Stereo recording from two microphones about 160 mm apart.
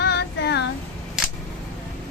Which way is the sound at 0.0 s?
90° left.